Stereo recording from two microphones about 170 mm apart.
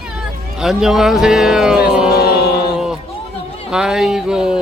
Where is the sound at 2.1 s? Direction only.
70° left (ahead or behind).